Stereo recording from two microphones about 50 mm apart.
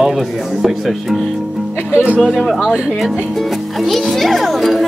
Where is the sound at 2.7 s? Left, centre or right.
Centre.